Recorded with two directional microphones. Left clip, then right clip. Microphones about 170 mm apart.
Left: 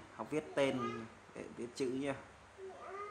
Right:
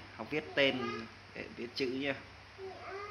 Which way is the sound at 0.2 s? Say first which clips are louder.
Right 4 dB; 15° left (ahead or behind).